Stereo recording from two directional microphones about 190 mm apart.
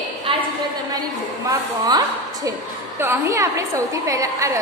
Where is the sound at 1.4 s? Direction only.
20° right (ahead or behind).